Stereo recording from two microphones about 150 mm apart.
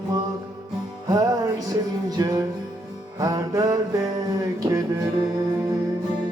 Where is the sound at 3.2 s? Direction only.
25° right (ahead or behind).